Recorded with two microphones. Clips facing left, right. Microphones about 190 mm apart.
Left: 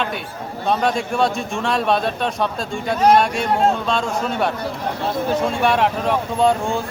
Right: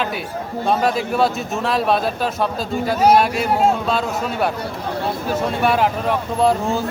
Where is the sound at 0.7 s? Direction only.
Centre (ahead or behind).